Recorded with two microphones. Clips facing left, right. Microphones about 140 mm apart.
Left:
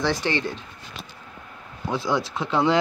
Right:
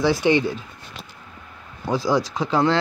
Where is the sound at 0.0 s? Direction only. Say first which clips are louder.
Right 6 dB; 15° right (ahead or behind).